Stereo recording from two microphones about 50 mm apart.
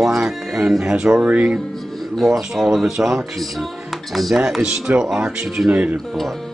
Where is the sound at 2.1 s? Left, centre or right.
Centre.